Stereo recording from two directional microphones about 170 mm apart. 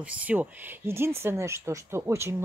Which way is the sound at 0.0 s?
10° right (ahead or behind).